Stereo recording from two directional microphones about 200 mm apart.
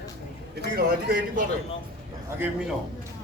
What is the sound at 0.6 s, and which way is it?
Speech, 45° right (ahead or behind).